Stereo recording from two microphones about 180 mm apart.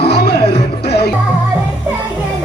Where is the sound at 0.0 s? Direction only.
60° left (ahead or behind).